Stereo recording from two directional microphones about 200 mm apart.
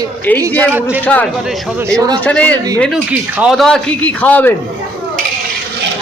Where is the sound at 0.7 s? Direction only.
10° right (ahead or behind).